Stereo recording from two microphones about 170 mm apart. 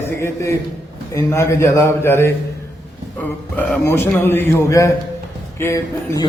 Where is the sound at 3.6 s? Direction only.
10° left (ahead or behind).